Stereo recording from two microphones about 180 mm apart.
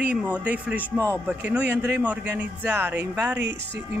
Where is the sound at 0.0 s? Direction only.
5° right (ahead or behind).